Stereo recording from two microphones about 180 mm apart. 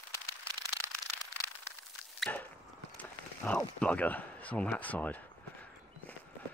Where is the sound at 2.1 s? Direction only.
5° left (ahead or behind).